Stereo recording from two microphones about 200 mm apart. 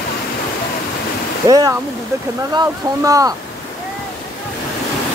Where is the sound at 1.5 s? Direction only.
15° right (ahead or behind).